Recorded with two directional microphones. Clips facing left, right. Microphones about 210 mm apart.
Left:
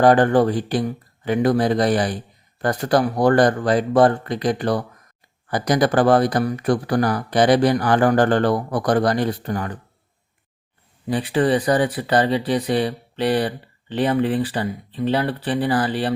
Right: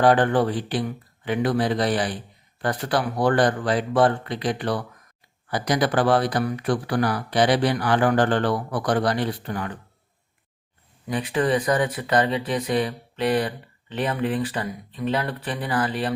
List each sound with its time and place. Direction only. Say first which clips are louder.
0.0 s speech: left 4 dB; 45° left (ahead or behind)
11.1 s speech: left 4 dB; 30° left (ahead or behind)